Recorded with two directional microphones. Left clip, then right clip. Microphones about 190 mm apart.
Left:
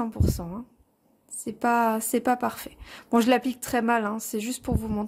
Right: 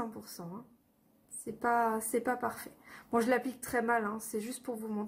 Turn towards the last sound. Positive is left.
turn(degrees=50)  # may be behind; listen again after turning